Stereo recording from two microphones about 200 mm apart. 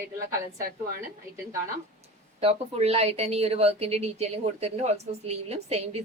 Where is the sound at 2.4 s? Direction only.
30° right (ahead or behind).